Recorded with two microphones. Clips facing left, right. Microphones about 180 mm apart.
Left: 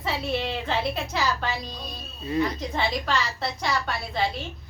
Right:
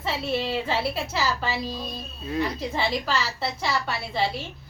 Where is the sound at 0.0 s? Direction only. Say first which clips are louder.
Right 1 dB; centre (ahead or behind).